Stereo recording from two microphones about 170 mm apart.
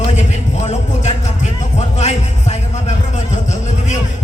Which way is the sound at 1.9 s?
40° left (ahead or behind).